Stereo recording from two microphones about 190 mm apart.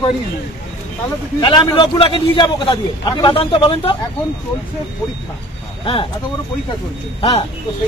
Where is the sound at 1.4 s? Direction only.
25° left (ahead or behind).